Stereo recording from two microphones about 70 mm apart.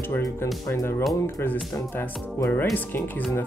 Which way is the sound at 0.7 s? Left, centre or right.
Left.